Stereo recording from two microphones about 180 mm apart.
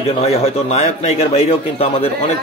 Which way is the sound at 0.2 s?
35° left (ahead or behind).